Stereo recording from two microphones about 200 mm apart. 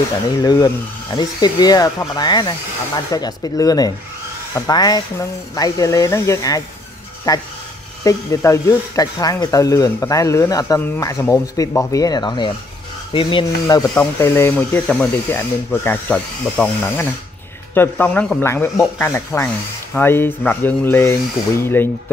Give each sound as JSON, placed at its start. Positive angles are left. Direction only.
{"t": 0.4, "sound": "speech", "side_deg": 20}